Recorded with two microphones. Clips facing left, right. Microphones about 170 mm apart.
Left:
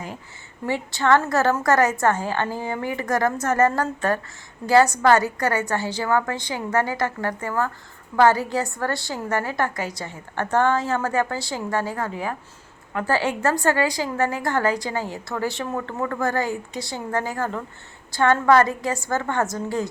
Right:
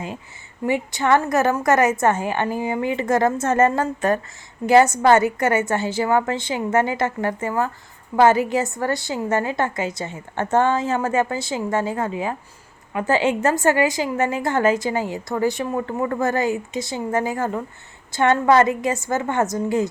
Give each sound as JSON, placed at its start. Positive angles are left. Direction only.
{"t": 0.6, "sound": "a woman's voice", "side_deg": -15}